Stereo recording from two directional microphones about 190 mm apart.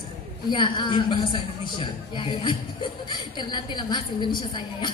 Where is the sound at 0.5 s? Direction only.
25° left (ahead or behind).